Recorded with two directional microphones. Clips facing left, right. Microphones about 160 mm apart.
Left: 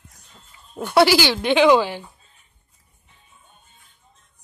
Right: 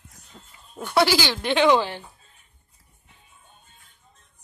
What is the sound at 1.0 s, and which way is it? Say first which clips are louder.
Speech: left 5 dB; 80° left.